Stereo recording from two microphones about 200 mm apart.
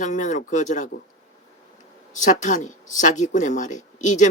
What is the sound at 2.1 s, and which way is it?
Speech, 40° left (ahead or behind).